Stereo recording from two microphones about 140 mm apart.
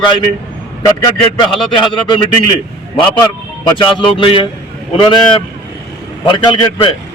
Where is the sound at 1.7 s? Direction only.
35° left (ahead or behind).